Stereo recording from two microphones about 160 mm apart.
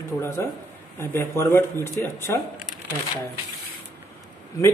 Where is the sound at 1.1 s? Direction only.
15° left (ahead or behind).